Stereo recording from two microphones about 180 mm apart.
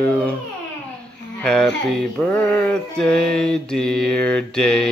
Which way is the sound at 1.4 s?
5° left (ahead or behind).